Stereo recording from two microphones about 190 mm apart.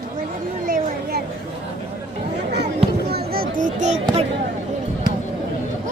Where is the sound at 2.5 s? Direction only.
60° right (ahead or behind); by 4.0 s 40° right (ahead or behind).